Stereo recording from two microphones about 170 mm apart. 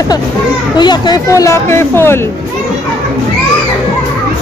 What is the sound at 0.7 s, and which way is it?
Speech, 25° left (ahead or behind).